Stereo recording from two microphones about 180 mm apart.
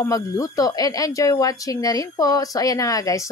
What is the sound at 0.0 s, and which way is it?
Speech, 20° left (ahead or behind).